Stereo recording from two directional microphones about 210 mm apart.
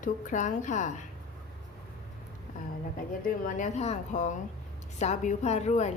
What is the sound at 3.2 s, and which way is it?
A woman's voice, 35° left (ahead or behind).